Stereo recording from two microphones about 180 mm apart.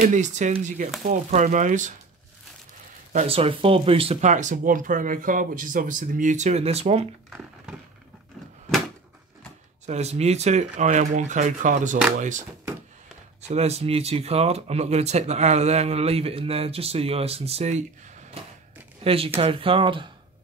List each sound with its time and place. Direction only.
0.0 s speech: 45° right (ahead or behind)
3.1 s speech: 35° right (ahead or behind)
7.2 s a sound: centre (ahead or behind)
9.8 s speech: 35° right (ahead or behind)
13.5 s speech: 35° right (ahead or behind)
18.4 s a sound: 35° right (ahead or behind)
19.0 s speech: 30° right (ahead or behind)